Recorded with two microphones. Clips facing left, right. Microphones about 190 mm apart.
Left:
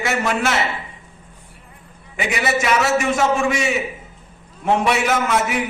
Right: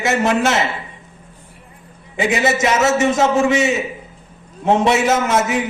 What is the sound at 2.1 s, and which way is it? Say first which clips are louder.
A man's voice: right 4 dB; 25° right (ahead or behind).